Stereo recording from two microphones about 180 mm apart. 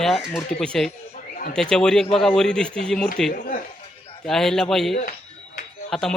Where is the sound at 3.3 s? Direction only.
55° left (ahead or behind).